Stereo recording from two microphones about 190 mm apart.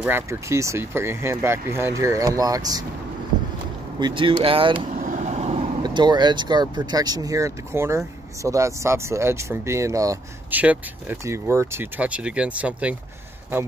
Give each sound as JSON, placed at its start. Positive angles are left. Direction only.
{"t": 0.0, "sound": "speech", "side_deg": -15}
{"t": 4.0, "sound": "speech", "side_deg": -25}
{"t": 4.9, "sound": "vehicle", "side_deg": -40}
{"t": 5.8, "sound": "speech", "side_deg": -20}